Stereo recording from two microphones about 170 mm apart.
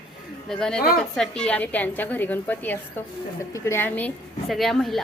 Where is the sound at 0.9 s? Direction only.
5° left (ahead or behind).